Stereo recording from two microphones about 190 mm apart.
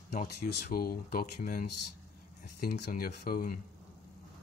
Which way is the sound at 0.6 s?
50° left (ahead or behind).